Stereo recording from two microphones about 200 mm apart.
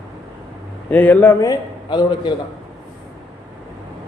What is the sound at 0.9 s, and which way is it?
A man's voice, 10° left (ahead or behind).